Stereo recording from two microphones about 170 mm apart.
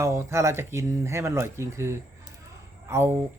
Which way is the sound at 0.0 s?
15° right (ahead or behind).